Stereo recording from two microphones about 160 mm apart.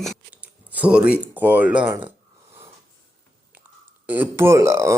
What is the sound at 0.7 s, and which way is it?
Speech, 10° right (ahead or behind).